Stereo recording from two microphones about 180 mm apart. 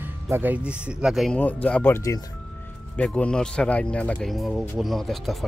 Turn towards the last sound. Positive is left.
turn(degrees=0)  # may be behind; listen again after turning